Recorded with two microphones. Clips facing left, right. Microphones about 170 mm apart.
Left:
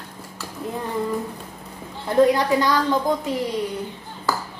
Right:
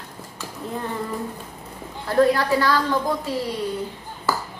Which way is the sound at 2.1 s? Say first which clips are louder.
Left 1 dB; 20° left (ahead or behind).